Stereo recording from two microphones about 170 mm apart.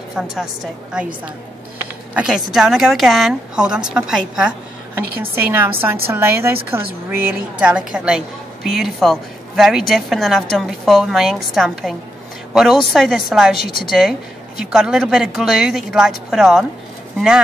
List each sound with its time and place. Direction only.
0.1 s a woman's voice: centre (ahead or behind)
2.1 s a woman's voice: 5° right (ahead or behind)
12.9 s a woman's voice: centre (ahead or behind)